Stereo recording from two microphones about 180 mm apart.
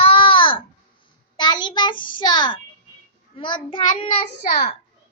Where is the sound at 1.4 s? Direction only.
25° left (ahead or behind).